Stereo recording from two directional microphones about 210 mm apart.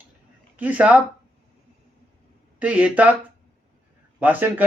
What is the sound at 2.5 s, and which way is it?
Speech, 5° right (ahead or behind).